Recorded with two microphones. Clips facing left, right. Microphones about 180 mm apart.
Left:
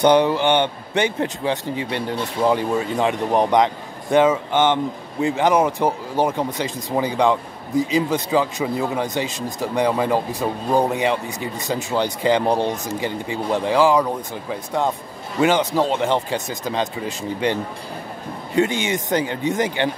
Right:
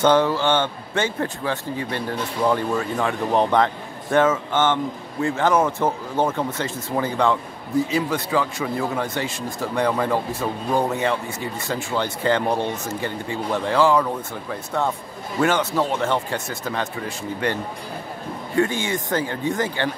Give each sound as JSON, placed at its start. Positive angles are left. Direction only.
{"t": 0.0, "sound": "speech", "side_deg": 15}